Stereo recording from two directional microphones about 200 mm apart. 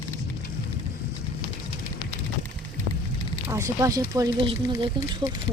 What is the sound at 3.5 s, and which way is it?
Speech, 15° right (ahead or behind).